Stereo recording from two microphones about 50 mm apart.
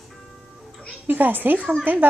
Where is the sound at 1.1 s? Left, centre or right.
Right.